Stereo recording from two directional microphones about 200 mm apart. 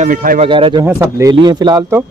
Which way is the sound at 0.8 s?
15° right (ahead or behind).